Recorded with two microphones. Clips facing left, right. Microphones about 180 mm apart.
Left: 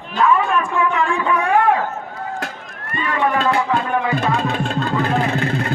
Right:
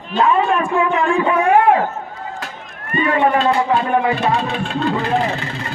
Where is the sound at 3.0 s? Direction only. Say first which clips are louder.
Right 4 dB; 30° right (ahead or behind).